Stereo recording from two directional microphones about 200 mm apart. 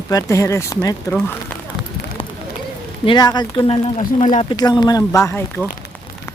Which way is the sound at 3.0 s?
20° left (ahead or behind).